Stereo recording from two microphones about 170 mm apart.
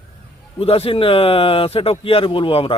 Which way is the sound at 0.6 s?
35° left (ahead or behind).